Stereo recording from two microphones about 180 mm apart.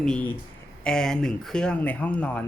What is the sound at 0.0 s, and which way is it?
Speech, 5° left (ahead or behind).